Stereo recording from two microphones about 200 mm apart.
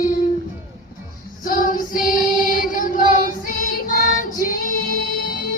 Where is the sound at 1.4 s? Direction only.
45° left (ahead or behind).